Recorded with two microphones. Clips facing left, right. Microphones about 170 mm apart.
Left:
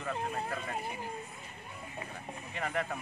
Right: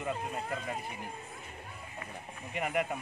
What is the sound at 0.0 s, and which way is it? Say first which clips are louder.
Speech: even; 15° right (ahead or behind).